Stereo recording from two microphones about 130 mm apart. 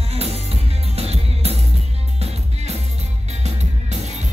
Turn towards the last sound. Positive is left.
turn(degrees=-60)  # may be behind; listen again after turning